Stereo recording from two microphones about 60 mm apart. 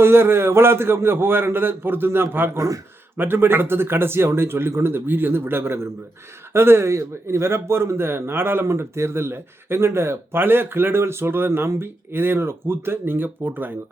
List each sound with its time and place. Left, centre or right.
0.0 s speech: right
2.6 s a man's voice: right
3.2 s speech: right